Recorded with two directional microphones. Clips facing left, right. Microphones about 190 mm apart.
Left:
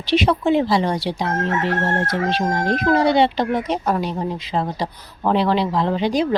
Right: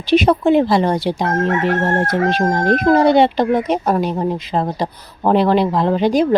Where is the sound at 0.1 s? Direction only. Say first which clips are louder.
Right 5 dB; 50° right (ahead or behind).